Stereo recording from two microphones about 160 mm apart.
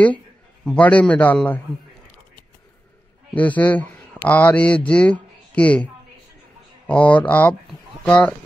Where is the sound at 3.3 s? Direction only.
10° left (ahead or behind).